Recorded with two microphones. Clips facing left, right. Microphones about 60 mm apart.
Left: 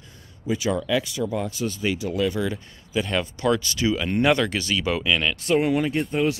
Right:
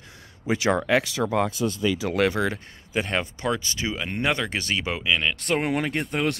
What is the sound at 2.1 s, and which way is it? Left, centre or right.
Speech, right.